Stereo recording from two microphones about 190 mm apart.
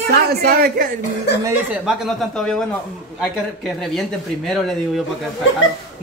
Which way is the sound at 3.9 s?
Centre (ahead or behind).